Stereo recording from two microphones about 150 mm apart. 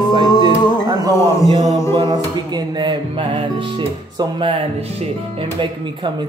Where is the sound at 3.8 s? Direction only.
35° right (ahead or behind).